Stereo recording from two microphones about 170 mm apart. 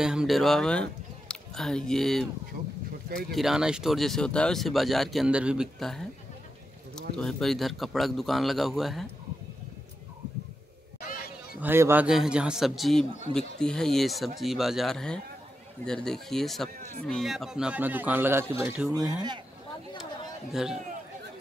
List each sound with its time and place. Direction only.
0.0 s speech: 5° right (ahead or behind)
3.3 s speech: centre (ahead or behind)
11.0 s a sound: 60° left (ahead or behind)
11.6 s speech: 10° right (ahead or behind)
18.9 s speech: 25° right (ahead or behind)
20.5 s speech: 5° right (ahead or behind)